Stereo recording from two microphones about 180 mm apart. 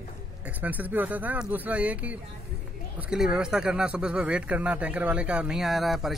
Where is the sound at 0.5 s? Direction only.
10° right (ahead or behind).